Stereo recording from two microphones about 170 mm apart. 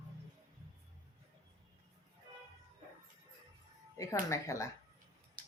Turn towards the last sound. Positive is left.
turn(degrees=20)  # may be behind; listen again after turning